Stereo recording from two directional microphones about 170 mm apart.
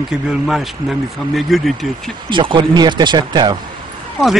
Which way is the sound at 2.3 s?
30° right (ahead or behind).